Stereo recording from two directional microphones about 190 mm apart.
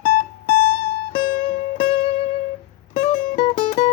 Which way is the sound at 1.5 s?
30° left (ahead or behind).